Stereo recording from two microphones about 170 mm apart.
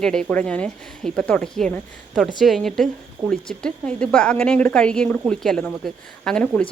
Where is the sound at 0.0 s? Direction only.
5° left (ahead or behind).